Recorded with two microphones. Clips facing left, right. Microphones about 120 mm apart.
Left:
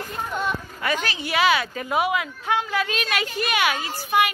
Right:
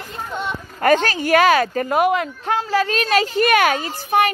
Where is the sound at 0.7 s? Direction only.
50° right (ahead or behind).